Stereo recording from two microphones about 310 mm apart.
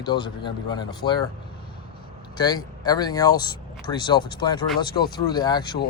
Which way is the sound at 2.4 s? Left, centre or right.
Centre.